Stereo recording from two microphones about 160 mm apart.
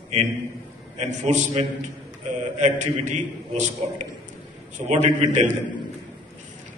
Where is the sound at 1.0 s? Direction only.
45° right (ahead or behind).